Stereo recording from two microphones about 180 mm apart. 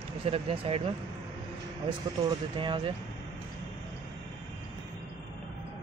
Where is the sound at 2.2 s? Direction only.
25° right (ahead or behind).